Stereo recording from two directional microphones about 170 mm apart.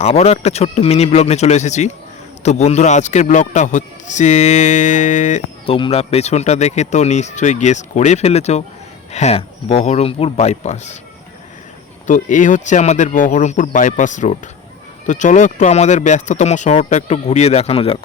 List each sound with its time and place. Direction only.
0.0 s speech: 40° left (ahead or behind)
5.6 s speech: 30° left (ahead or behind)
12.0 s speech: 50° left (ahead or behind)